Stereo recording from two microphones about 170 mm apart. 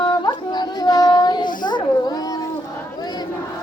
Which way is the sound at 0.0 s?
25° left (ahead or behind).